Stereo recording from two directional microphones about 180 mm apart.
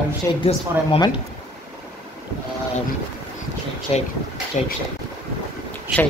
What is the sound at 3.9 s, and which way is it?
Speech, 35° left (ahead or behind).